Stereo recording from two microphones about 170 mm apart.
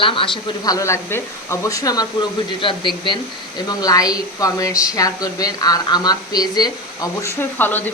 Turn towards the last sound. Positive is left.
turn(degrees=10)  # may be behind; listen again after turning